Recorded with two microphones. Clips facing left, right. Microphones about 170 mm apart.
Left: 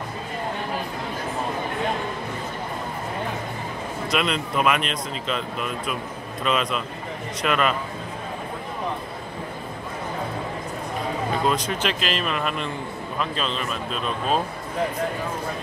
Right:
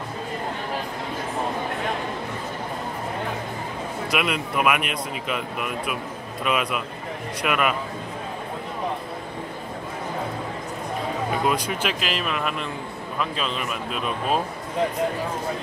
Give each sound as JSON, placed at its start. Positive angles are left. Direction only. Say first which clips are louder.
{"t": 4.1, "sound": "speech", "louder": "left 1 dB", "side_deg": -10}
{"t": 11.4, "sound": "speech", "louder": "left 1 dB", "side_deg": -10}